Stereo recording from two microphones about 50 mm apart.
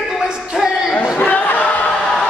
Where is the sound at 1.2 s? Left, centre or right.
Left.